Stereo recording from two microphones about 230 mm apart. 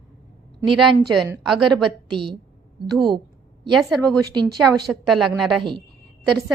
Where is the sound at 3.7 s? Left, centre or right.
Centre.